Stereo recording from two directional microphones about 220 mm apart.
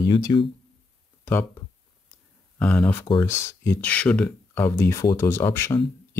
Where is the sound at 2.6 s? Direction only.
5° left (ahead or behind).